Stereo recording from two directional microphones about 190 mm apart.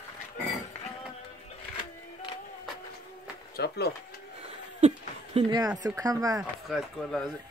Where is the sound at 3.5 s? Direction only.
60° left (ahead or behind).